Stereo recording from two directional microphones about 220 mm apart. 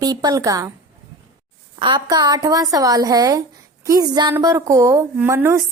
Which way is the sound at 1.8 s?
20° right (ahead or behind).